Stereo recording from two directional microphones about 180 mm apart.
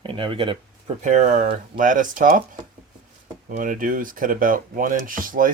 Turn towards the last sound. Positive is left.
turn(degrees=-50)  # may be behind; listen again after turning